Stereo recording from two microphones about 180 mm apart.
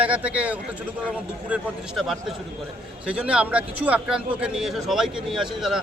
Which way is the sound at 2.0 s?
Centre (ahead or behind).